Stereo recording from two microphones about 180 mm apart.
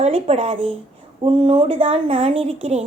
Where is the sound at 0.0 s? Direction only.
35° right (ahead or behind).